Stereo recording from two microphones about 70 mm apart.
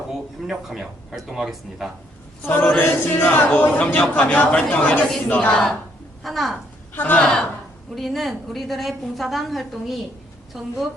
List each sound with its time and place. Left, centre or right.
0.7 s a woman's voice: centre
2.4 s speech: left
6.2 s a woman's voice: centre
6.9 s speech: left
7.9 s a woman's voice: centre